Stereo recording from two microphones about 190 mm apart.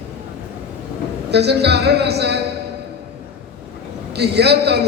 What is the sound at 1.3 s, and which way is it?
A man's voice, 60° right (ahead or behind).